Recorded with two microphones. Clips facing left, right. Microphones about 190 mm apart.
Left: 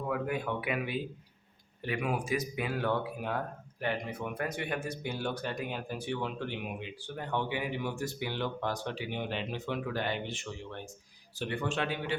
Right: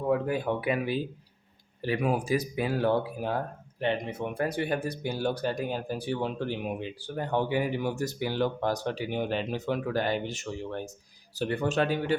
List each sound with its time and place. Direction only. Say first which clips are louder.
0.1 s speech: right 6 dB; 30° right (ahead or behind)